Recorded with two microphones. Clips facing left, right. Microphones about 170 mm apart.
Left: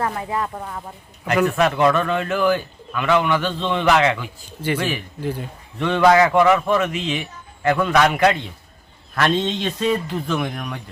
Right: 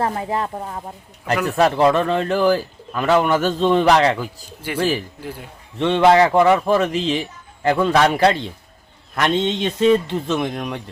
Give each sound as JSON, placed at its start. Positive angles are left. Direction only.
{"t": 0.0, "sound": "a man's voice", "side_deg": -30}
{"t": 5.8, "sound": "a man's voice", "side_deg": -25}
{"t": 9.1, "sound": "a man's voice", "side_deg": -20}